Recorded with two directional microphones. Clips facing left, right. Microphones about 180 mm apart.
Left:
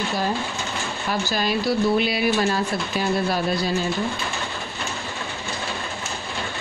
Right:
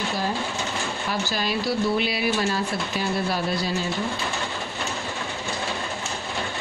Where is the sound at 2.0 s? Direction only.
50° left (ahead or behind).